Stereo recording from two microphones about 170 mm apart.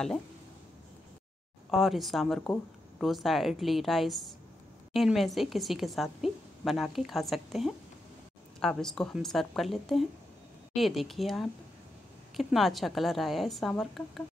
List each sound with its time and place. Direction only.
1.7 s a woman's voice: centre (ahead or behind)